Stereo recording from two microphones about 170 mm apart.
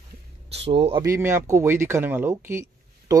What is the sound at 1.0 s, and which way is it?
Speech, 15° right (ahead or behind).